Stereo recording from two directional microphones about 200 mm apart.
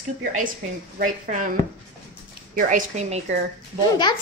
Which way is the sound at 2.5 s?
35° right (ahead or behind).